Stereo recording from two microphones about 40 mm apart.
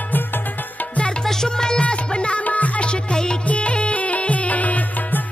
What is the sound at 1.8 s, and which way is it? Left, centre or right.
Music, left.